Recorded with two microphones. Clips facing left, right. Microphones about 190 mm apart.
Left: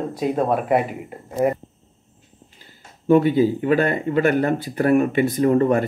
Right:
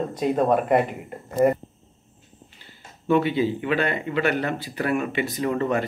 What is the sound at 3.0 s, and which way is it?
Speech, 45° left (ahead or behind).